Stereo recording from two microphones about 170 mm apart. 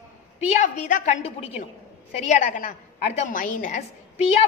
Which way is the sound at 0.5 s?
45° left (ahead or behind).